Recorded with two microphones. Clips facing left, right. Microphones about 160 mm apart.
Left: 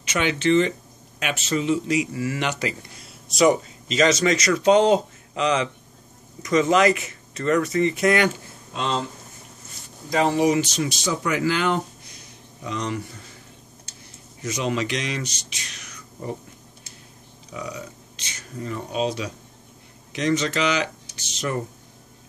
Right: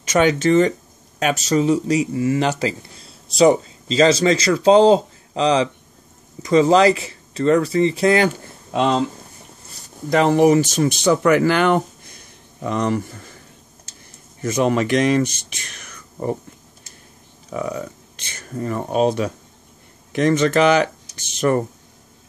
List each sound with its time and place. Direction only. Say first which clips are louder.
0.0 s speech: right 6 dB; 45° right (ahead or behind)
8.7 s speech: right 8 dB; 65° right (ahead or behind)
10.0 s speech: right 6 dB; 60° right (ahead or behind)
14.4 s speech: right 7 dB; 50° right (ahead or behind)
17.5 s speech: right 8 dB; 50° right (ahead or behind)